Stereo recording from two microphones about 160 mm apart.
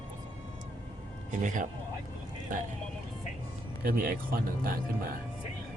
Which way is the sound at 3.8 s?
60° right (ahead or behind).